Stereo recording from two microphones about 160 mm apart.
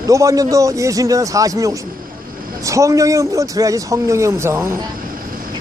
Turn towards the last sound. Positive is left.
turn(degrees=-15)  # may be behind; listen again after turning